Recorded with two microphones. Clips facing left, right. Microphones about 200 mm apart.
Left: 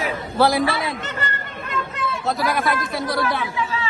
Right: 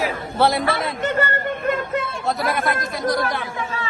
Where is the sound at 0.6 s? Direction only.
50° right (ahead or behind).